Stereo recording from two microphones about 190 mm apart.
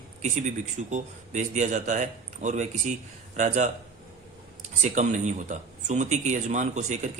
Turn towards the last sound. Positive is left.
turn(degrees=-35)  # may be behind; listen again after turning